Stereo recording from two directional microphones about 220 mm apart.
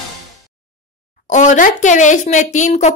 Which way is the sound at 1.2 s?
35° left (ahead or behind).